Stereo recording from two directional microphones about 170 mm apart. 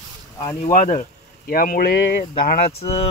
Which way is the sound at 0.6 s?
45° left (ahead or behind).